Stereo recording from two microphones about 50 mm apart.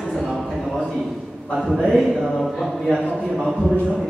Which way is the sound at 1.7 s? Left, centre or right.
Centre.